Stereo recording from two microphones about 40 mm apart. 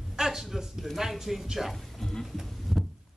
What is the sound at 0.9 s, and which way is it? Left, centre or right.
Speech, centre.